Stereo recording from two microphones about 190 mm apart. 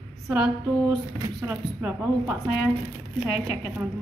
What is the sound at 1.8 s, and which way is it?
Speech, 10° right (ahead or behind).